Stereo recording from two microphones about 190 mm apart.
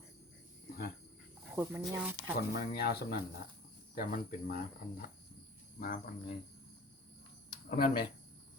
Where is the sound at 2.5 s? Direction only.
55° left (ahead or behind).